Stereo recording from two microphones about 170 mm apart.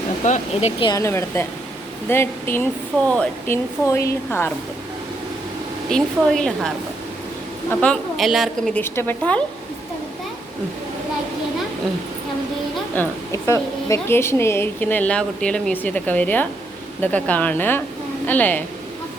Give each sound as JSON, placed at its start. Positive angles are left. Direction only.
{"t": 0.3, "sound": "speech", "side_deg": 45}
{"t": 0.8, "sound": "a woman's voice", "side_deg": 20}
{"t": 5.9, "sound": "a woman's voice", "side_deg": 5}
{"t": 7.7, "sound": "a woman's voice", "side_deg": 5}
{"t": 8.8, "sound": "a woman's voice", "side_deg": 10}
{"t": 13.0, "sound": "a woman's voice", "side_deg": 20}